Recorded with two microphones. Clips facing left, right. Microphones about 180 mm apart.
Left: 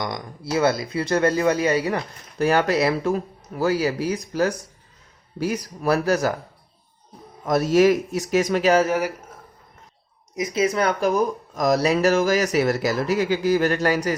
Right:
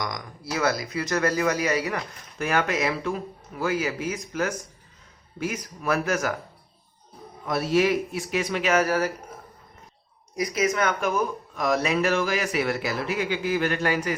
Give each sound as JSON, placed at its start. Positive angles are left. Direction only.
{"t": 0.0, "sound": "speech", "side_deg": 30}
{"t": 7.4, "sound": "speech", "side_deg": 45}
{"t": 8.8, "sound": "speech", "side_deg": 15}
{"t": 10.3, "sound": "speech", "side_deg": 25}